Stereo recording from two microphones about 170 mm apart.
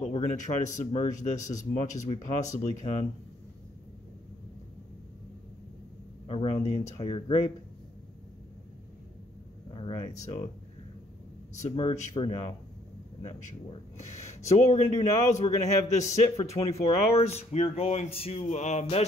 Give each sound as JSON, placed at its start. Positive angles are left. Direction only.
{"t": 0.1, "sound": "speech", "side_deg": 45}
{"t": 6.2, "sound": "a sound", "side_deg": 35}
{"t": 7.0, "sound": "speech", "side_deg": 35}
{"t": 10.0, "sound": "speech", "side_deg": 40}
{"t": 11.7, "sound": "speech", "side_deg": 40}